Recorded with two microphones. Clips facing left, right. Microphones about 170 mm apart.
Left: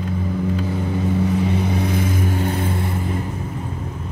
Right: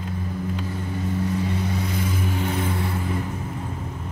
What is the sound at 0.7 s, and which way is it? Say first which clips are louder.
Vehicle: left 6 dB; 70° left (ahead or behind).